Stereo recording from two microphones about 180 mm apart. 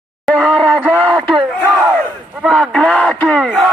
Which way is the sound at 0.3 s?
5° left (ahead or behind).